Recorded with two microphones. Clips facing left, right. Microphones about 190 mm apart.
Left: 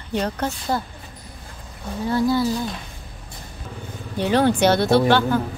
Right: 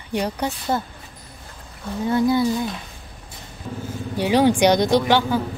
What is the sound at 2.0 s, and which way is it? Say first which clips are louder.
Speech: right 1 dB; 20° right (ahead or behind).